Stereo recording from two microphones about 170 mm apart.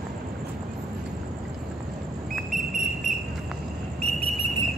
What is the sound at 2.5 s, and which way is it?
Whistle, 50° right (ahead or behind).